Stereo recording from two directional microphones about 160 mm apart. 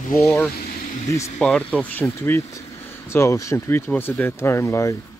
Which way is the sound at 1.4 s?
5° left (ahead or behind).